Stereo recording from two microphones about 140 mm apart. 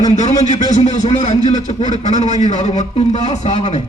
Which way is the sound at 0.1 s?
55° left (ahead or behind).